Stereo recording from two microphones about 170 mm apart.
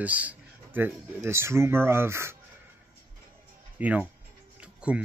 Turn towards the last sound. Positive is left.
turn(degrees=-5)  # may be behind; listen again after turning